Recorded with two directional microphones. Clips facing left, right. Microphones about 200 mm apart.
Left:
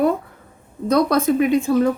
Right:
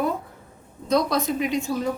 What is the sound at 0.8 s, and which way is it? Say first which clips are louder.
Speech: left 5 dB; 50° left (ahead or behind).